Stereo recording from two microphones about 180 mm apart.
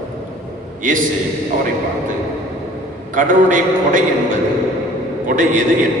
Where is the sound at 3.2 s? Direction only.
45° right (ahead or behind).